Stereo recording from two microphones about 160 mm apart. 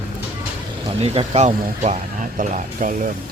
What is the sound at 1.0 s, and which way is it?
Speech, 40° right (ahead or behind).